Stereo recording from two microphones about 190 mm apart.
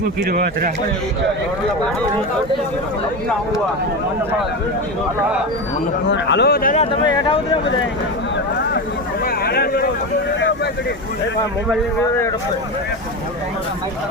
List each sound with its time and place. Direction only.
0.3 s speech: 50° right (ahead or behind)
6.1 s speech: 65° left (ahead or behind); by 6.7 s 50° left (ahead or behind)
7.1 s speech: 25° left (ahead or behind)
9.2 s a sound: 55° left (ahead or behind)